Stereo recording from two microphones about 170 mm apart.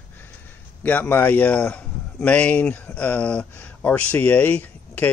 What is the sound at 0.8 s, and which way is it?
A man's voice, 10° left (ahead or behind).